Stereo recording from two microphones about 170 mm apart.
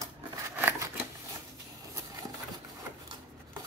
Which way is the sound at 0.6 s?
10° right (ahead or behind).